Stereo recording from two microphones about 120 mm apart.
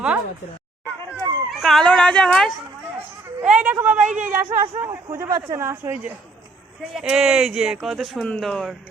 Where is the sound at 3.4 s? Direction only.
10° right (ahead or behind).